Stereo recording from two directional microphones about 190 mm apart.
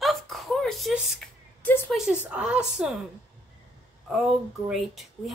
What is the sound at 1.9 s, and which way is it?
Speech, 5° right (ahead or behind).